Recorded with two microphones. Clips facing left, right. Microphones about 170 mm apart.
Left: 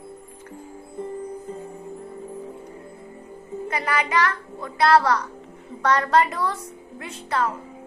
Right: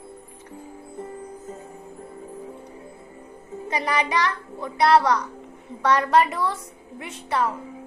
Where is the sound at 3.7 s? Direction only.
15° right (ahead or behind).